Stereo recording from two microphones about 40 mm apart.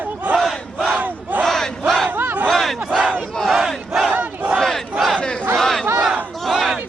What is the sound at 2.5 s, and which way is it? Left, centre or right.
Battle cry, centre.